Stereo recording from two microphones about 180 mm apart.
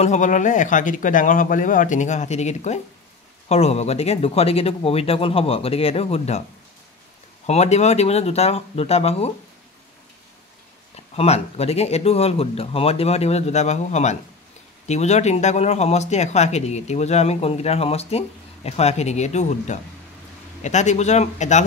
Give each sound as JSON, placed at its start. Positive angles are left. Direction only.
{"t": 0.0, "sound": "speech", "side_deg": 40}
{"t": 7.4, "sound": "speech", "side_deg": 40}
{"t": 11.1, "sound": "speech", "side_deg": 35}